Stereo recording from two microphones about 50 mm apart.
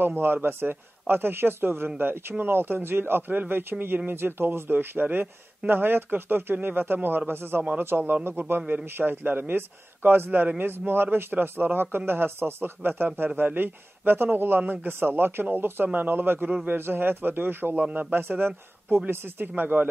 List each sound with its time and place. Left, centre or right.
0.0 s a man's voice: right
17.7 s a man's voice: right
18.1 s a man's voice: right